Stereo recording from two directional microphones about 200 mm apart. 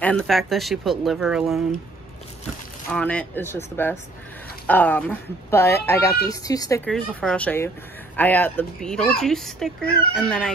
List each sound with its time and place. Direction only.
0.0 s speech: 5° left (ahead or behind)
2.9 s speech: 5° left (ahead or behind)
6.8 s speech: 5° left (ahead or behind)